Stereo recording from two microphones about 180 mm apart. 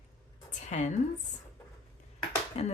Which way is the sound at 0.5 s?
40° left (ahead or behind).